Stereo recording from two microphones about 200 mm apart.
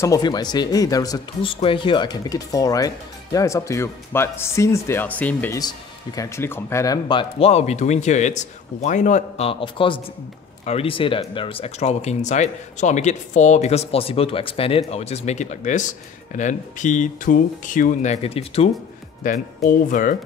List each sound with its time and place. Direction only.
0.0 s speech: 20° left (ahead or behind)
19.2 s speech: 40° left (ahead or behind)